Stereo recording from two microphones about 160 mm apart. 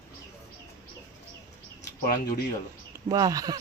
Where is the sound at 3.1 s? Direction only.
20° right (ahead or behind).